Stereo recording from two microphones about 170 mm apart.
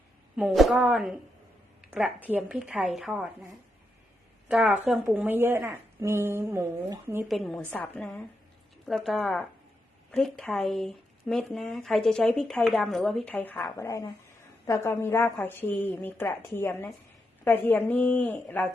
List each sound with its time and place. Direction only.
0.3 s speech: centre (ahead or behind)
4.4 s a woman's voice: 5° right (ahead or behind)
7.3 s a woman's voice: centre (ahead or behind)